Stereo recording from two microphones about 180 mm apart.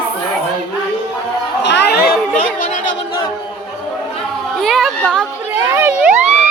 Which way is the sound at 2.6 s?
45° left (ahead or behind).